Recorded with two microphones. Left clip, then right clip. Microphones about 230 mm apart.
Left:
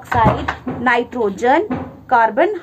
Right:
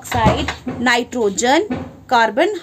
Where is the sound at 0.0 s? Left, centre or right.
Right.